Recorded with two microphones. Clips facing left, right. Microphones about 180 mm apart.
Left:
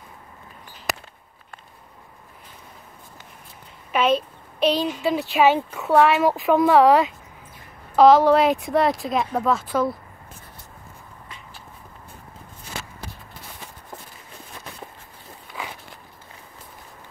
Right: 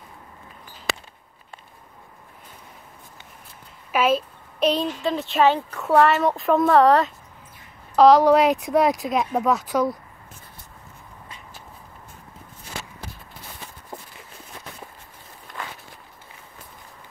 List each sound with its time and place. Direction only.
3.9 s a woman's voice: 5° right (ahead or behind)
9.3 s speech: 15° right (ahead or behind)
15.4 s walk: 5° left (ahead or behind)